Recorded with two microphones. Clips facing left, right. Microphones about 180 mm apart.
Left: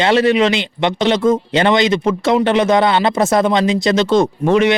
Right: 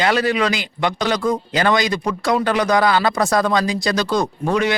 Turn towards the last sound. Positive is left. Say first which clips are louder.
# left 6 dB
turn(degrees=20)  # may be behind; listen again after turning